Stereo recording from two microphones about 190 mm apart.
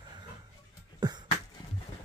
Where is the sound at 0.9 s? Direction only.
20° right (ahead or behind).